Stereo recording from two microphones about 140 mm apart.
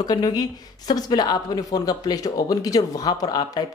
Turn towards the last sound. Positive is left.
turn(degrees=30)  # may be behind; listen again after turning